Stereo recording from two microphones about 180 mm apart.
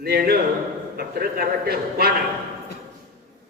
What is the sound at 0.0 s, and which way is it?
A man's voice, 60° right (ahead or behind).